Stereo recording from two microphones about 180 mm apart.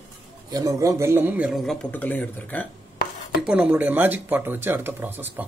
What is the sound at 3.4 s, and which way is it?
Speech, 10° right (ahead or behind).